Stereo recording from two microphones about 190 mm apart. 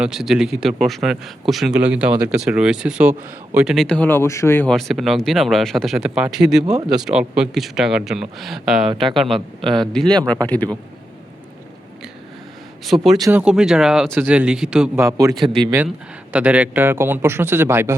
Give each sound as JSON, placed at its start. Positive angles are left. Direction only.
{"t": 0.0, "sound": "speech", "side_deg": 0}
{"t": 9.6, "sound": "speech", "side_deg": -25}
{"t": 9.8, "sound": "speech", "side_deg": 5}
{"t": 13.1, "sound": "a man's voice", "side_deg": -20}
{"t": 13.4, "sound": "speech", "side_deg": -5}
{"t": 14.9, "sound": "a man's voice", "side_deg": -15}